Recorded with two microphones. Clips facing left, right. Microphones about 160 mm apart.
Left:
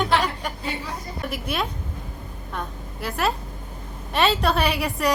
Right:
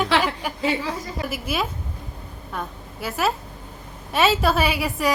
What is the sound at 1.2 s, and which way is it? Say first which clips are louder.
A woman's voice: even; 5° right (ahead or behind).